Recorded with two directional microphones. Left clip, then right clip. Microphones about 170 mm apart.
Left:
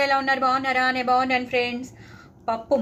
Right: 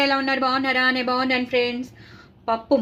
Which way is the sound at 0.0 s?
35° right (ahead or behind).